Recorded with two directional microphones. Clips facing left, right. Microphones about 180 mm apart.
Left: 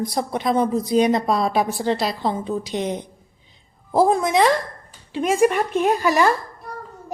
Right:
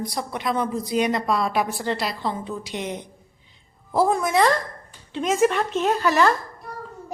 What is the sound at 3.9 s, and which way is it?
Speech, 20° left (ahead or behind).